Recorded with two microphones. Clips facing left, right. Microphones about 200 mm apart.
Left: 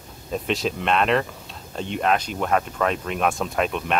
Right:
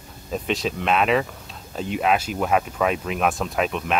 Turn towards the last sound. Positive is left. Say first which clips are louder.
# even
turn(degrees=0)  # may be behind; listen again after turning